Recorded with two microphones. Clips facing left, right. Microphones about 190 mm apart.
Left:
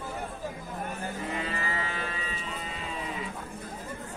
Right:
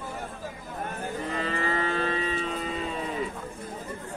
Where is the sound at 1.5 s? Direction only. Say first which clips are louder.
Right 6 dB; 40° right (ahead or behind).